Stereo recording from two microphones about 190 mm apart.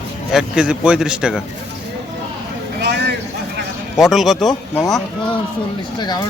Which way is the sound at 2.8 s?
60° right (ahead or behind).